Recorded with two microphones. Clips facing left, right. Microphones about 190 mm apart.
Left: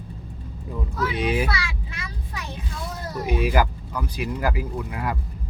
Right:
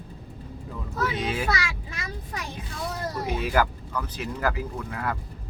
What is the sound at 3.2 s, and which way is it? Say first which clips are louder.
Speech: left 3 dB; 15° left (ahead or behind).